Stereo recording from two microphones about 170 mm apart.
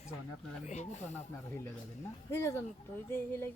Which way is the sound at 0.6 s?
45° left (ahead or behind).